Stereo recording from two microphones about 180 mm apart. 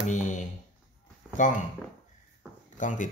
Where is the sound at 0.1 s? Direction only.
45° left (ahead or behind).